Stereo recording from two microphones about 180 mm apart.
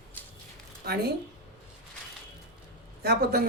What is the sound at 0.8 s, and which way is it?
Speech, 60° right (ahead or behind).